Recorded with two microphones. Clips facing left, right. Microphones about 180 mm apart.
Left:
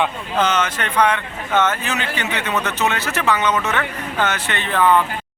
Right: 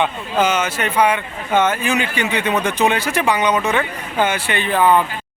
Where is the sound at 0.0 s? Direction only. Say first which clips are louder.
Right 2 dB; 10° right (ahead or behind).